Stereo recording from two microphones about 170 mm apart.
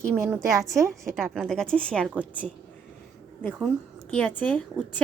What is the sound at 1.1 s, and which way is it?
A woman's voice, centre (ahead or behind).